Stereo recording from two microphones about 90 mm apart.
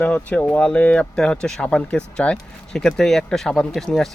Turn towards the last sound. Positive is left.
turn(degrees=5)  # may be behind; listen again after turning